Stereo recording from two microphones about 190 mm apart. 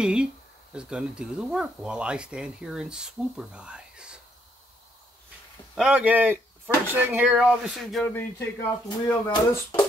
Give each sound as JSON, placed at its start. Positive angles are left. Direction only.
{"t": 0.0, "sound": "speech", "side_deg": -5}
{"t": 5.8, "sound": "a man's voice", "side_deg": -5}
{"t": 8.8, "sound": "speech", "side_deg": 20}